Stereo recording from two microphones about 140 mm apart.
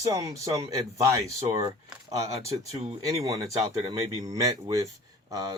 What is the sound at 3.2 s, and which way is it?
Speech, 25° right (ahead or behind).